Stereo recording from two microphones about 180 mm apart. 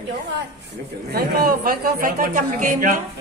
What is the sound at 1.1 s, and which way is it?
A man's voice, 60° right (ahead or behind).